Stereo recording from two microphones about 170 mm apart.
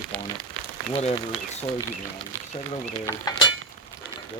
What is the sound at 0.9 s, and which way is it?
Speech, 35° left (ahead or behind).